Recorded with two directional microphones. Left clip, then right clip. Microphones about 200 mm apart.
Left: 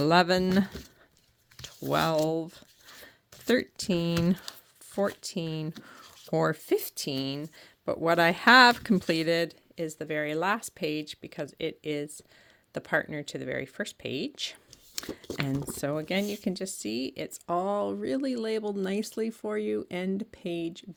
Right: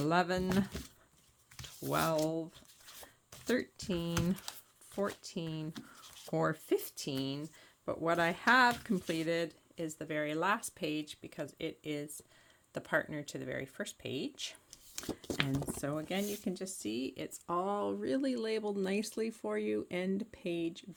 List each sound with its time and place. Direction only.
0.0 s speech: 45° left (ahead or behind)
1.9 s speech: 45° left (ahead or behind)
15.2 s speech: 10° left (ahead or behind)
15.7 s speech: 45° left (ahead or behind)